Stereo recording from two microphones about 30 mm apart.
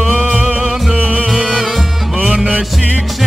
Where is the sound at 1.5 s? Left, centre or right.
Centre.